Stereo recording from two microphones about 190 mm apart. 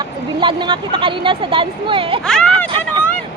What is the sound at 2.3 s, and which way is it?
Speech, 5° left (ahead or behind).